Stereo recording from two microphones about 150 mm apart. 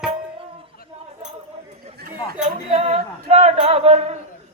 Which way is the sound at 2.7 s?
45° right (ahead or behind).